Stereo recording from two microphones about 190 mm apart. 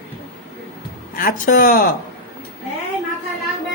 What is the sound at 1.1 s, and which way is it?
Speech, 45° left (ahead or behind).